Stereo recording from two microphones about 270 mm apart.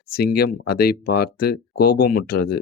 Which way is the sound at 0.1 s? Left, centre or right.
Left.